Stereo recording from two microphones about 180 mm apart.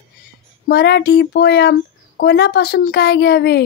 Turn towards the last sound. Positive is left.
turn(degrees=65)  # may be behind; listen again after turning